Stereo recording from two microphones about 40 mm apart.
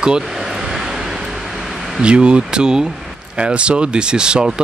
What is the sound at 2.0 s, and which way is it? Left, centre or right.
Speech, right.